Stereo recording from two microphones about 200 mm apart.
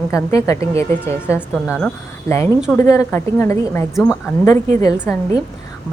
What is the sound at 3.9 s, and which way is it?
Speech, centre (ahead or behind).